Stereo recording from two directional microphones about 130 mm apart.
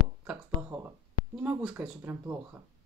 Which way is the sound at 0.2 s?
10° right (ahead or behind).